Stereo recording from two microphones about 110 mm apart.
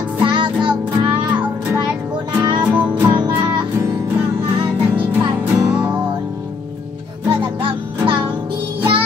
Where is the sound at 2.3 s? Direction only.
45° right (ahead or behind).